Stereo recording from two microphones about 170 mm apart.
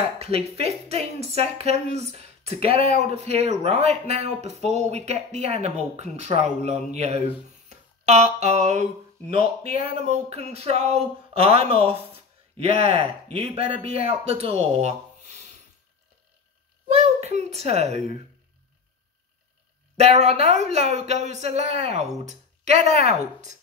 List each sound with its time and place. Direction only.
0.2 s a woman's voice: 35° right (ahead or behind)
10.0 s a woman's voice: 40° right (ahead or behind)
16.8 s a sound: 40° right (ahead or behind)
20.0 s a woman's voice: 40° right (ahead or behind)